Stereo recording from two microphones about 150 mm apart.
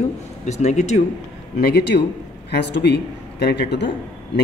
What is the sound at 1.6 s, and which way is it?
Speech, 90° left.